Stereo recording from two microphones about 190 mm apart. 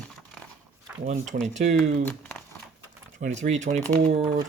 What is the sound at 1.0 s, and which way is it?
Speech, 40° right (ahead or behind).